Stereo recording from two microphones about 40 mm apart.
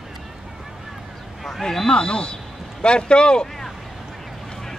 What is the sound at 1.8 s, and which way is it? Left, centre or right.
Speech, left.